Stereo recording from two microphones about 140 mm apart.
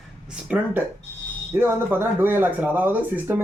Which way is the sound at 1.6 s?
15° right (ahead or behind).